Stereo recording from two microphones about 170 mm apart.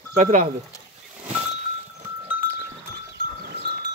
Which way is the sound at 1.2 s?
40° right (ahead or behind).